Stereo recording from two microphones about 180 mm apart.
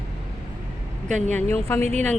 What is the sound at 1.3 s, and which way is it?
Speech, 10° left (ahead or behind).